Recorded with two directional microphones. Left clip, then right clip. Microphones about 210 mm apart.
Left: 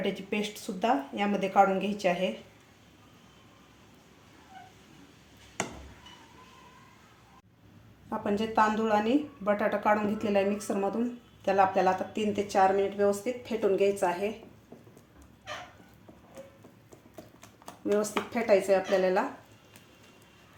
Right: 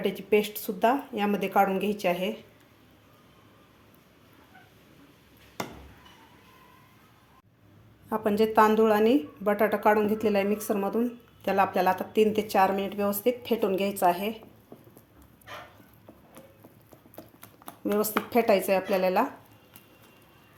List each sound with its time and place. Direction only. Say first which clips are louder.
0.0 s a woman's voice: right 7 dB; 25° right (ahead or behind)
8.1 s a woman's voice: right 5 dB; 35° right (ahead or behind)
18.3 s speech: right 1 dB; 45° right (ahead or behind)